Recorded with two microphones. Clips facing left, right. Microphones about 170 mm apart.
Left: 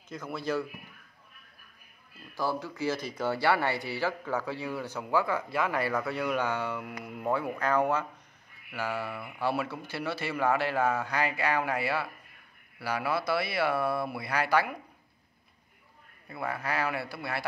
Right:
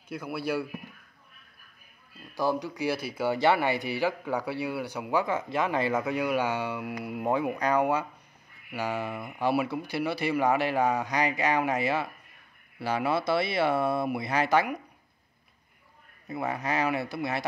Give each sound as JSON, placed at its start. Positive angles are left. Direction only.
{"t": 0.1, "sound": "speech", "side_deg": -10}
{"t": 2.3, "sound": "speech", "side_deg": -15}
{"t": 16.3, "sound": "speech", "side_deg": -20}